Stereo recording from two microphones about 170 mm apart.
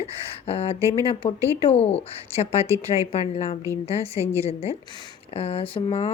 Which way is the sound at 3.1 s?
35° left (ahead or behind).